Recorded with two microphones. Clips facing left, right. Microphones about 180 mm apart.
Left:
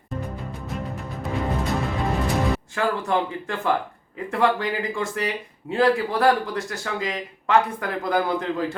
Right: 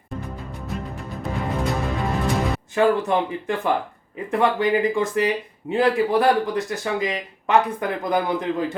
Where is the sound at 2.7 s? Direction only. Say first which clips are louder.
Right 8 dB; 20° right (ahead or behind).